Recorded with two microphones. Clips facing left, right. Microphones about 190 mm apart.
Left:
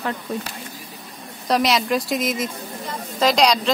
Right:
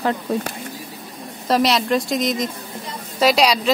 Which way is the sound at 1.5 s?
Centre (ahead or behind).